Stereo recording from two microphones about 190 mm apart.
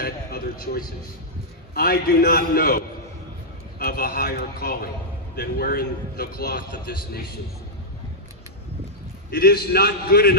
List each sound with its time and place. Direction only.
0.0 s a sound: 55° left (ahead or behind)
1.7 s a man's voice: 55° left (ahead or behind)
3.8 s a man's voice: 50° left (ahead or behind)
9.3 s a man's voice: 55° left (ahead or behind)